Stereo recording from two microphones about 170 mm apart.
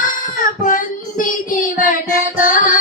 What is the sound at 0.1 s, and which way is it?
Child singing, 55° left (ahead or behind).